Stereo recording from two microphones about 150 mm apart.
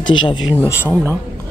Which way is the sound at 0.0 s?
30° left (ahead or behind).